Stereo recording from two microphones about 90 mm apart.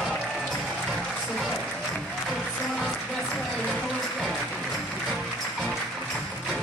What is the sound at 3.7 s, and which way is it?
Music, 5° left (ahead or behind).